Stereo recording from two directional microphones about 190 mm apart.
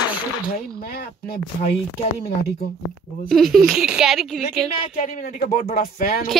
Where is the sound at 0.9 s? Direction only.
55° left (ahead or behind).